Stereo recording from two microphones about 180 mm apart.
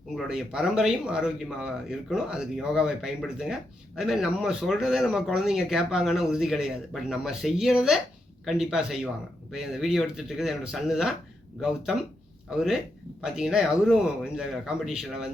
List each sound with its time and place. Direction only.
0.2 s speech: 5° right (ahead or behind)
12.5 s speech: 5° right (ahead or behind)